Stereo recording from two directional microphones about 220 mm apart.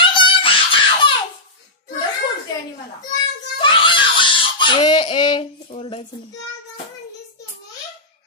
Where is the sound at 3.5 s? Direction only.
20° left (ahead or behind).